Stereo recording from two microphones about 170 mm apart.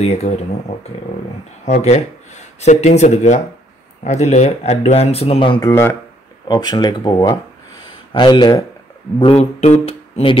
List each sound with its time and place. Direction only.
0.0 s speech: 40° left (ahead or behind)
1.7 s speech: 40° left (ahead or behind)
5.7 s speech: 15° left (ahead or behind)
6.4 s speech: 25° left (ahead or behind)
9.2 s speech: 35° left (ahead or behind)